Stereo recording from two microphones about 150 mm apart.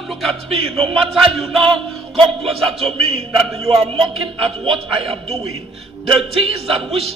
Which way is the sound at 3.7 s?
40° right (ahead or behind).